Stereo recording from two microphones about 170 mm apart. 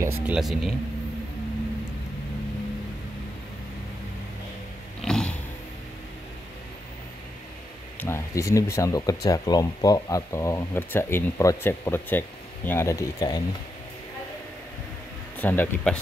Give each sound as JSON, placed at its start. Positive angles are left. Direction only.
{"t": 0.0, "sound": "speech", "side_deg": -5}
{"t": 5.0, "sound": "vehicle", "side_deg": 5}
{"t": 8.0, "sound": "speech", "side_deg": 15}
{"t": 15.3, "sound": "speech", "side_deg": 10}